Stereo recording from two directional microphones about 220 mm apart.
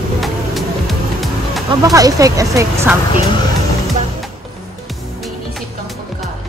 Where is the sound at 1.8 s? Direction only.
15° right (ahead or behind).